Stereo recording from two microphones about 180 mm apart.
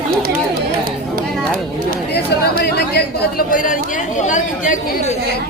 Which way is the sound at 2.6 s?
60° left (ahead or behind).